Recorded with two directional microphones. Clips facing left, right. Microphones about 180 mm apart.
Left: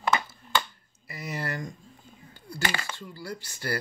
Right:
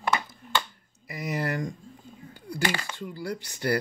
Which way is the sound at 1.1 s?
15° right (ahead or behind).